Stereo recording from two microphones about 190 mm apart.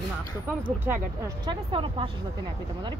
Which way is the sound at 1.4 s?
25° right (ahead or behind).